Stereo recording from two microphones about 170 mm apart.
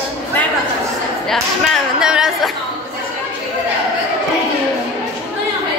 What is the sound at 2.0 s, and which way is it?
Chatter, 5° right (ahead or behind).